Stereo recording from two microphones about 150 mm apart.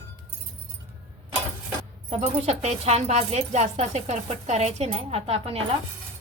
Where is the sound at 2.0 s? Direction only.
45° right (ahead or behind).